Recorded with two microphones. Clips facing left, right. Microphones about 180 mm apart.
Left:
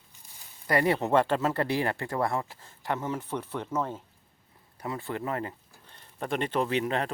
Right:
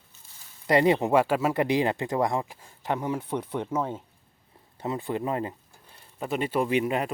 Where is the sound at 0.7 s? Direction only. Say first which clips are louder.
Right 3 dB; 20° right (ahead or behind).